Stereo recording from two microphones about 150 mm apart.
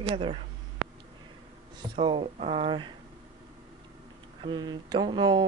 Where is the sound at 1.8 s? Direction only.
35° right (ahead or behind).